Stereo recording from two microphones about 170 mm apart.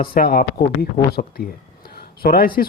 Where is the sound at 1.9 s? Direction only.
60° left (ahead or behind).